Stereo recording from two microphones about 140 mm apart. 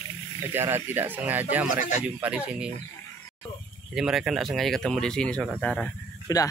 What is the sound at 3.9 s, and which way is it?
Speech, 5° right (ahead or behind).